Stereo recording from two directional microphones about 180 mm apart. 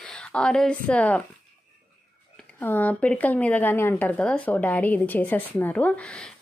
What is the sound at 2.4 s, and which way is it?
Speech, 10° left (ahead or behind).